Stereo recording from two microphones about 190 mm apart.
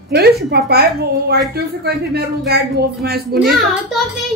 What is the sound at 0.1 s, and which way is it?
Speech, 55° right (ahead or behind).